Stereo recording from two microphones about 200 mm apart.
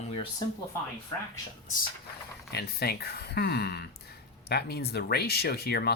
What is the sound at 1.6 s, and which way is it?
Speech, 40° left (ahead or behind).